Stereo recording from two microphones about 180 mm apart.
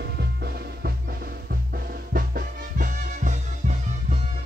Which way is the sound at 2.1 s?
50° right (ahead or behind).